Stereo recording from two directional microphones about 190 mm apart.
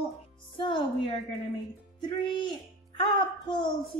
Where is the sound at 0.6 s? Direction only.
25° left (ahead or behind).